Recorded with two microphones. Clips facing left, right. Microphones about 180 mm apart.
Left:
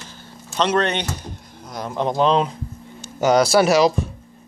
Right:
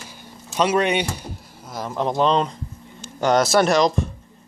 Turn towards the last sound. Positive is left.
turn(degrees=5)  # may be behind; listen again after turning